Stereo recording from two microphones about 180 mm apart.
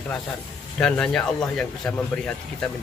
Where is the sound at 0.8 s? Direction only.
5° left (ahead or behind).